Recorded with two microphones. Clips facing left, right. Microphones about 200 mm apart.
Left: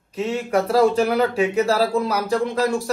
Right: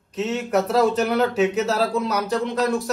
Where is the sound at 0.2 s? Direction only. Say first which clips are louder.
Left 1 dB; centre (ahead or behind).